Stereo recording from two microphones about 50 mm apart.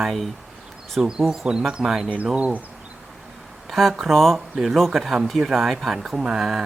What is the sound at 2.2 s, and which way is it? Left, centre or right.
Speech, right.